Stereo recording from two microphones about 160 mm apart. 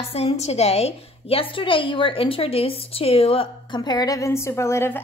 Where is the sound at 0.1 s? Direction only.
40° left (ahead or behind).